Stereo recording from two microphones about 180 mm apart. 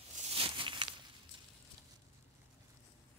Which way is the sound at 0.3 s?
30° right (ahead or behind).